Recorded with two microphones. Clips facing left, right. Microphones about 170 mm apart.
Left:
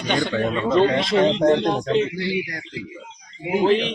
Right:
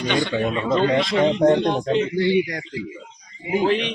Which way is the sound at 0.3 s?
15° right (ahead or behind).